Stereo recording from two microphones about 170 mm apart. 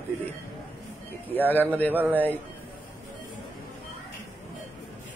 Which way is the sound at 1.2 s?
10° left (ahead or behind).